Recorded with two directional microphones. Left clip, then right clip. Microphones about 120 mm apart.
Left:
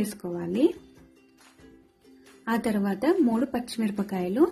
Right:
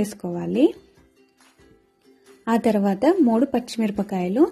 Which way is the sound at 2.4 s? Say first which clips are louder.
Right 7 dB; 45° right (ahead or behind).